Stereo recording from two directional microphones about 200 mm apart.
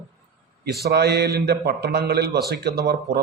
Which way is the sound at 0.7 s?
55° right (ahead or behind).